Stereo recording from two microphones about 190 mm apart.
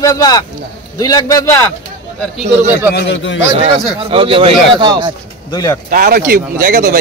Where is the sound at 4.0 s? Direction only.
30° right (ahead or behind).